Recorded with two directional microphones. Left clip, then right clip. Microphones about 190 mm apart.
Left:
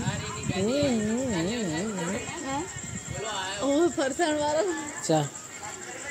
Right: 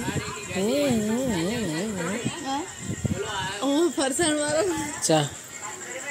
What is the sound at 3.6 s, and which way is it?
A woman's voice, 50° right (ahead or behind).